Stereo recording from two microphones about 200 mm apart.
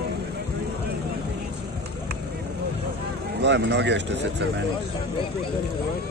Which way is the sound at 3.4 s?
60° right (ahead or behind).